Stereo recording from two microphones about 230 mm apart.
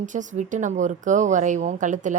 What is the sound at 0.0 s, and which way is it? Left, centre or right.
Speech, right.